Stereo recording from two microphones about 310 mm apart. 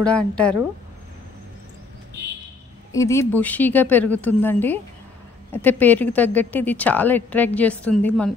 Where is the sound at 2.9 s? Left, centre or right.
Centre.